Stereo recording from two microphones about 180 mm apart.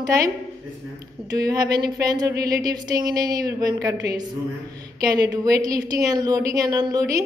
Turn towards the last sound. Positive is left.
turn(degrees=-20)  # may be behind; listen again after turning